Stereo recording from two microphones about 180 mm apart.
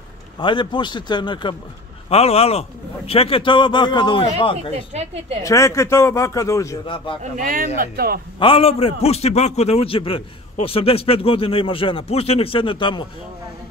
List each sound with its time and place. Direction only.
0.4 s a man's voice: 25° left (ahead or behind)
4.9 s a woman's voice: 35° right (ahead or behind)
5.4 s a man's voice: 15° left (ahead or behind)
7.3 s speech: 50° right (ahead or behind)
8.4 s a man's voice: 30° left (ahead or behind)